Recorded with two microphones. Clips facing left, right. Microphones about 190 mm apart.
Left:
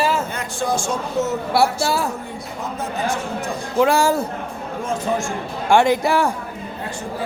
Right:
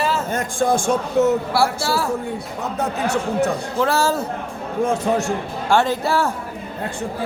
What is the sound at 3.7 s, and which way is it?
Speech, 15° left (ahead or behind).